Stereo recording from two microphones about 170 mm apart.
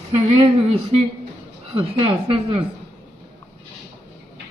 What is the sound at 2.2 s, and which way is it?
Speech, 30° right (ahead or behind).